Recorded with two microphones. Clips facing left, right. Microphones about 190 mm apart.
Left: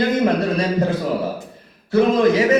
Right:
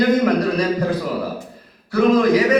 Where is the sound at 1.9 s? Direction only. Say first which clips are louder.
Even; 25° left (ahead or behind).